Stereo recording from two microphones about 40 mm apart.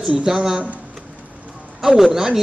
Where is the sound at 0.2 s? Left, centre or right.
Centre.